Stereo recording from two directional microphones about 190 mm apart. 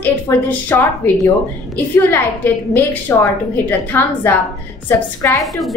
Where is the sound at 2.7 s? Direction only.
10° left (ahead or behind).